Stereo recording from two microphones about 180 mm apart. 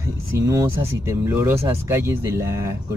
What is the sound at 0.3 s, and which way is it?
Speech, 15° right (ahead or behind).